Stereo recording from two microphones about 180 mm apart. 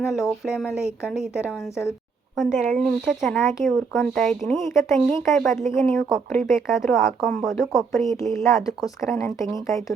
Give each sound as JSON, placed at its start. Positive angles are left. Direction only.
{"t": 0.0, "sound": "speech", "side_deg": 0}
{"t": 9.0, "sound": "speech", "side_deg": 15}